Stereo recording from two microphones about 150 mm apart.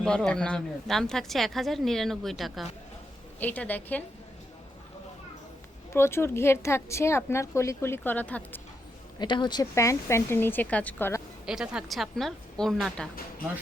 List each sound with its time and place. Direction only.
0.0 s speech: 5° left (ahead or behind)
3.4 s a woman's voice: 10° left (ahead or behind)
5.9 s a woman's voice: 15° left (ahead or behind)
9.1 s speech: 30° left (ahead or behind); by 11.2 s 15° left (ahead or behind)
11.4 s speech: 5° right (ahead or behind)